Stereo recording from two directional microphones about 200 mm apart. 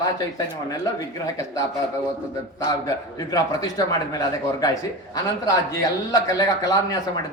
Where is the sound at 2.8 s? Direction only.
20° left (ahead or behind).